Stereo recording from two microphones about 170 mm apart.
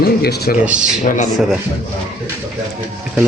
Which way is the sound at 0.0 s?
65° left (ahead or behind).